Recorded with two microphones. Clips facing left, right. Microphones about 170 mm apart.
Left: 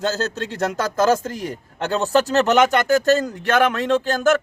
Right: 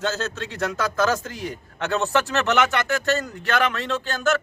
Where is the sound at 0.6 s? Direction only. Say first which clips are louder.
Left 3 dB; 40° left (ahead or behind).